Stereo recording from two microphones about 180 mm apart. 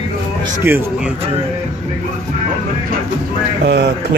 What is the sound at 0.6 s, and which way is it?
Speech, 10° right (ahead or behind).